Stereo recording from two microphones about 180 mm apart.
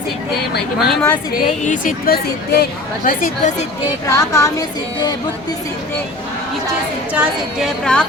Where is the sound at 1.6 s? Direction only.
45° left (ahead or behind).